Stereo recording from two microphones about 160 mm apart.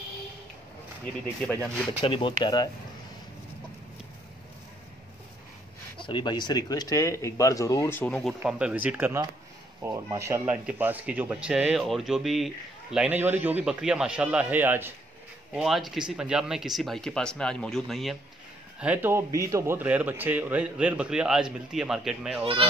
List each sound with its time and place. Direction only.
2.0 s speech: 35° left (ahead or behind)
6.0 s speech: 30° left (ahead or behind)
8.0 s speech: 5° left (ahead or behind)
15.5 s speech: centre (ahead or behind)
18.8 s speech: 10° right (ahead or behind)
22.4 s speech: 35° right (ahead or behind)